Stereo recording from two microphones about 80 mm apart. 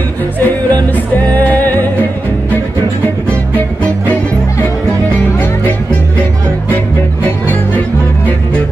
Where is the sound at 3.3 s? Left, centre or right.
Centre.